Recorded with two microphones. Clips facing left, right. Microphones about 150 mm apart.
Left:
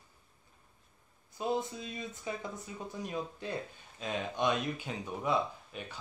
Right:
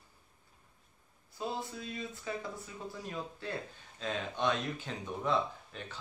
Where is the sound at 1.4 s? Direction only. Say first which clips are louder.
Left 5 dB; 20° left (ahead or behind).